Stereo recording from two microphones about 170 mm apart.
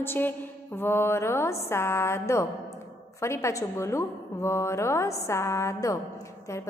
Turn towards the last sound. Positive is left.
turn(degrees=15)  # may be behind; listen again after turning